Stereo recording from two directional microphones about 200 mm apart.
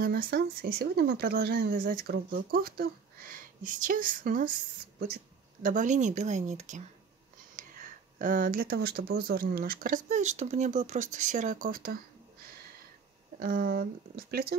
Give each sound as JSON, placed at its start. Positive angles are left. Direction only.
{"t": 0.0, "sound": "speech", "side_deg": -50}
{"t": 8.2, "sound": "speech", "side_deg": -45}
{"t": 13.4, "sound": "speech", "side_deg": -45}